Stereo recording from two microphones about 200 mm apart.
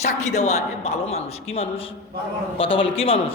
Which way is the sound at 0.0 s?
35° left (ahead or behind).